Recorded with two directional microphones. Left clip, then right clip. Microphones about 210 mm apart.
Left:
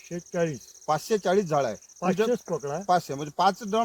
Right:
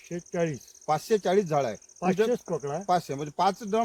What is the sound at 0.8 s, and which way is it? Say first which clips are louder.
Speech: even; 10° left (ahead or behind).